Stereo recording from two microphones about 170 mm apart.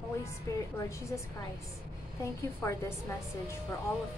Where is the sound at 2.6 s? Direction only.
15° left (ahead or behind).